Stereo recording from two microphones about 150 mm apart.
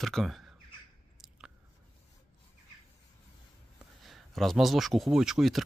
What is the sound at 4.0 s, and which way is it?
Speech, centre (ahead or behind).